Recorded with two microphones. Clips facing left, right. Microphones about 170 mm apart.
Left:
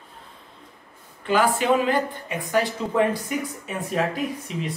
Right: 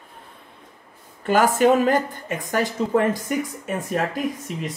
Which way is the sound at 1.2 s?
45° right (ahead or behind).